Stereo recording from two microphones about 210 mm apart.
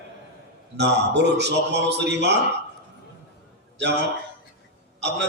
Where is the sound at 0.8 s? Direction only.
55° right (ahead or behind).